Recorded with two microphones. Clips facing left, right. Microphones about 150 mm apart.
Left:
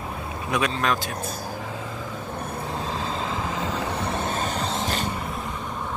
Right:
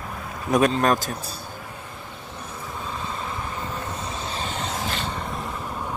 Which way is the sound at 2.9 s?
90° left.